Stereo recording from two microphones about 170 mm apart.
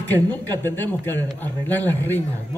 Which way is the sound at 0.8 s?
10° left (ahead or behind).